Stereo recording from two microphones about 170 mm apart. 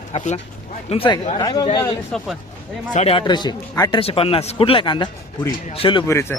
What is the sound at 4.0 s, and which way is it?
A man's voice, 35° left (ahead or behind).